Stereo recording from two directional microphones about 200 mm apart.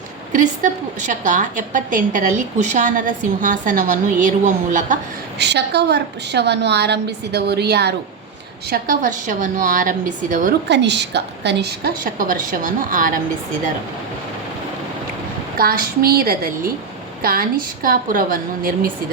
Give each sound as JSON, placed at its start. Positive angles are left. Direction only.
{"t": 0.3, "sound": "a woman's voice", "side_deg": -40}
{"t": 5.4, "sound": "a woman's voice", "side_deg": -60}
{"t": 8.7, "sound": "a woman's voice", "side_deg": -40}
{"t": 10.7, "sound": "a woman's voice", "side_deg": -60}
{"t": 15.5, "sound": "a woman's voice", "side_deg": -45}